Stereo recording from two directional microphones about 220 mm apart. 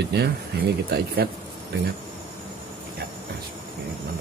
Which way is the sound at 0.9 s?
45° right (ahead or behind).